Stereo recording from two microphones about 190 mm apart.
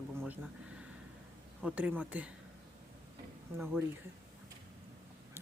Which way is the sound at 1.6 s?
5° right (ahead or behind).